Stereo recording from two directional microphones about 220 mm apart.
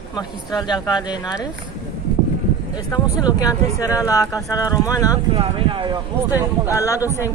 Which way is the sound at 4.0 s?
15° left (ahead or behind).